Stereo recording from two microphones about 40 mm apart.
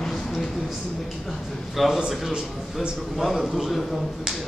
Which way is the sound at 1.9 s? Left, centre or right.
Centre.